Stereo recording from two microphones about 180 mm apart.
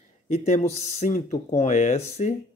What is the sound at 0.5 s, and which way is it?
Speech, 40° left (ahead or behind).